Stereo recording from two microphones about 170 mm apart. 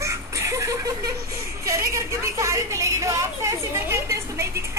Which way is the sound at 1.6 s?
15° right (ahead or behind).